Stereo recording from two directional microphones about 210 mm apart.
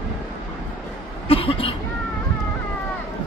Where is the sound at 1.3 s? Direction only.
25° left (ahead or behind).